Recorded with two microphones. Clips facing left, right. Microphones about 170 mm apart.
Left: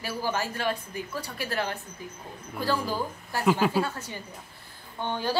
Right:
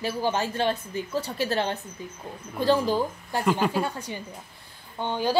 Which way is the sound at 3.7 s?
15° right (ahead or behind).